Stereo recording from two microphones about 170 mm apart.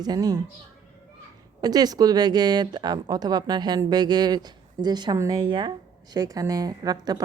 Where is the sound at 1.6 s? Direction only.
20° right (ahead or behind).